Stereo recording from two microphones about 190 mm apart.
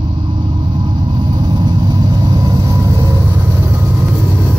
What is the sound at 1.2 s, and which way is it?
Vehicle, 25° right (ahead or behind).